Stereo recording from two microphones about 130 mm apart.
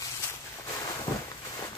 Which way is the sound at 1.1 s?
25° left (ahead or behind).